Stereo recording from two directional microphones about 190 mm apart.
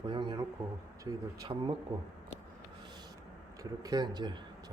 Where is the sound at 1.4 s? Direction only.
25° right (ahead or behind).